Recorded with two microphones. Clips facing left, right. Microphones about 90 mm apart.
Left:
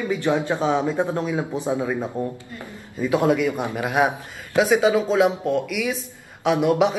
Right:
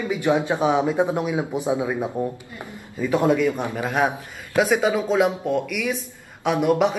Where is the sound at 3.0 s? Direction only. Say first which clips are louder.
Even; 10° left (ahead or behind).